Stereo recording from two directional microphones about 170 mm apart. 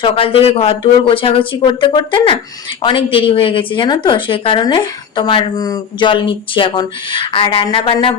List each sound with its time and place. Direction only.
0.0 s a woman's voice: 35° left (ahead or behind)